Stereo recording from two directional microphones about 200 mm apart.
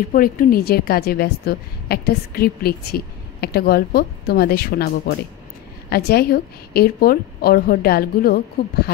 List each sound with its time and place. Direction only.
0.1 s a woman's voice: 45° left (ahead or behind)